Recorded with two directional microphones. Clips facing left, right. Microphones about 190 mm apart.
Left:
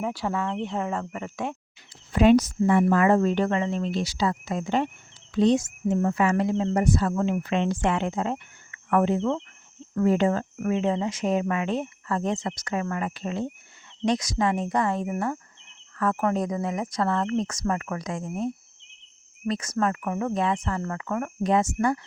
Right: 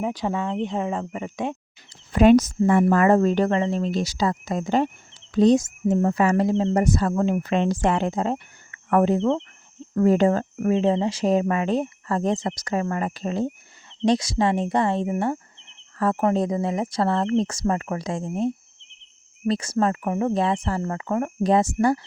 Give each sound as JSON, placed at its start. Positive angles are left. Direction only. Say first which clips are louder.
{"t": 0.0, "sound": "speech", "louder": "right 2 dB", "side_deg": -20}
{"t": 2.1, "sound": "a woman's voice", "louder": "right 3 dB", "side_deg": -45}